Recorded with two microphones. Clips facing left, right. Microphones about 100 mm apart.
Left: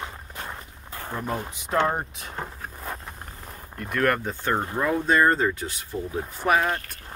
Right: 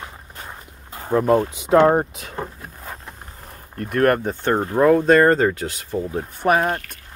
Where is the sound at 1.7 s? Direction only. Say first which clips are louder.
Right 9 dB; 50° right (ahead or behind).